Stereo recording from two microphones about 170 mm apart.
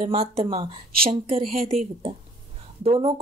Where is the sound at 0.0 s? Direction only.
35° right (ahead or behind).